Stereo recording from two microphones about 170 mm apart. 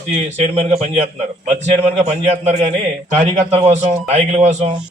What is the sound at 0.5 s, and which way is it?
A man's voice, 40° right (ahead or behind).